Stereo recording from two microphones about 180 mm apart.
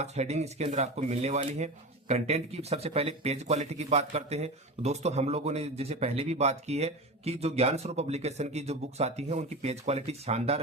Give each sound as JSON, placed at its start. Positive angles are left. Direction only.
{"t": 0.0, "sound": "speech", "side_deg": -40}